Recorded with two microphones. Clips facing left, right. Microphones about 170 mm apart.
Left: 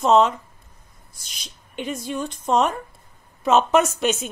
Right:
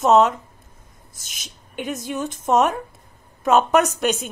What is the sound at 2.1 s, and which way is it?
Speech, 5° right (ahead or behind).